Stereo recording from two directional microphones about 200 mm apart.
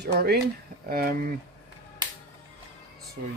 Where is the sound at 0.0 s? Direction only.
55° right (ahead or behind).